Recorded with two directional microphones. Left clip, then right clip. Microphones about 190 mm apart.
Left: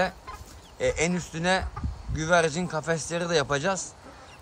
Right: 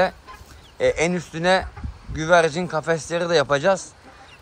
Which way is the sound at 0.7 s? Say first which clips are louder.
Right 6 dB; 10° left (ahead or behind).